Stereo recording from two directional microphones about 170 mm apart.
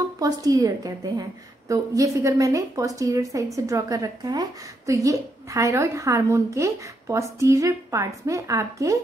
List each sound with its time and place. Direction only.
0.2 s a woman's voice: 20° right (ahead or behind)